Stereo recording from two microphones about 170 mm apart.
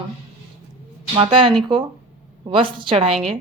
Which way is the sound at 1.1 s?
30° right (ahead or behind).